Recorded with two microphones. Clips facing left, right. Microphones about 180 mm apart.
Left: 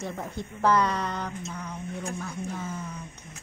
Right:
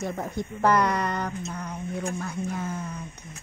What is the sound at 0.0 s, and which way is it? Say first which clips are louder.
Speech: right 4 dB; 10° right (ahead or behind).